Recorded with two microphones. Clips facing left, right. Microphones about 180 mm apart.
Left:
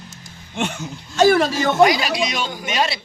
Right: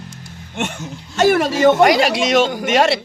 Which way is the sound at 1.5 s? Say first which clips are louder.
Right 4 dB; 70° right (ahead or behind).